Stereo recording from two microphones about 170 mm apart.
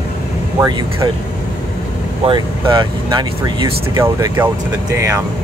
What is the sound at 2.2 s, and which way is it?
Speech, 30° right (ahead or behind).